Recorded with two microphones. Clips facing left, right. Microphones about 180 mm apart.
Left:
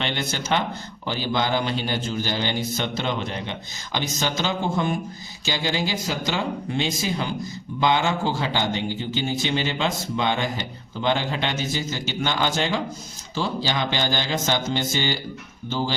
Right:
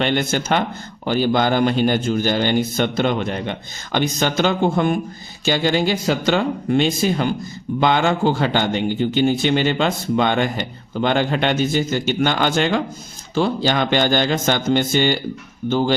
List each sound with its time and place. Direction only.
0.0 s a man's voice: 50° right (ahead or behind)